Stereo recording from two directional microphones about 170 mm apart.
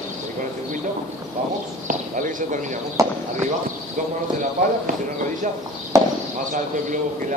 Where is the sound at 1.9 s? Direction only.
50° right (ahead or behind).